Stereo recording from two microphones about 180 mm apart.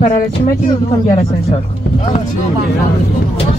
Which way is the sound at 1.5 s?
35° left (ahead or behind).